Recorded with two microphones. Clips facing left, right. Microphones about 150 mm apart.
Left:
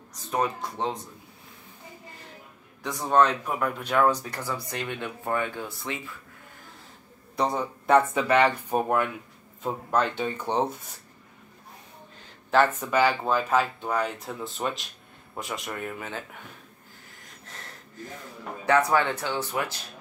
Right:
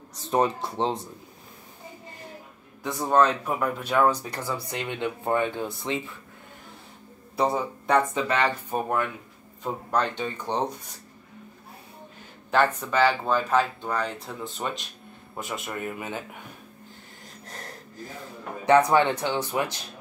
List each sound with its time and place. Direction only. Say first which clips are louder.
0.1 s speech: right 4 dB; 30° right (ahead or behind)
2.8 s speech: right 1 dB; 5° right (ahead or behind); by 6.1 s 20° right (ahead or behind)
7.3 s speech: right 2 dB; 5° right (ahead or behind)
8.1 s speech: left 3 dB; 10° left (ahead or behind)
12.9 s speech: right 1 dB; 10° left (ahead or behind); by 16.4 s 15° right (ahead or behind)
18.7 s speech: right 3 dB; 20° right (ahead or behind)